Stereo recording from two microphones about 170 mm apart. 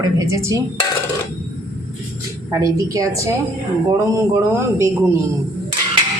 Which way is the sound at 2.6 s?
20° right (ahead or behind).